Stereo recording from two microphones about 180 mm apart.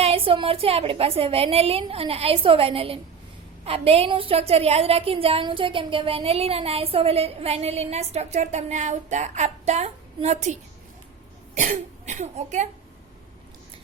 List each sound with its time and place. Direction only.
0.0 s a woman's voice: 30° right (ahead or behind)
11.5 s speech: 45° right (ahead or behind)